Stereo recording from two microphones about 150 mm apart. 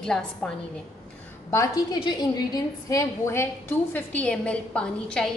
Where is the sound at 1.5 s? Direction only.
20° left (ahead or behind).